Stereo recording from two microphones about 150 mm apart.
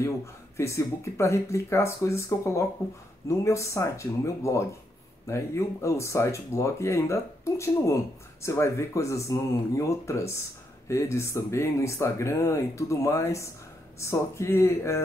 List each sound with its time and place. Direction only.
0.6 s speech: 20° left (ahead or behind)